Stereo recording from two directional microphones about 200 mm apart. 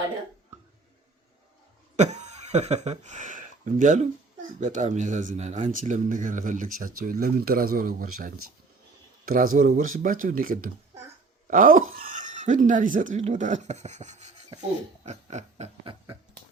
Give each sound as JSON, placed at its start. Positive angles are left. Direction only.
{"t": 2.0, "sound": "speech", "side_deg": -35}
{"t": 9.2, "sound": "speech", "side_deg": -45}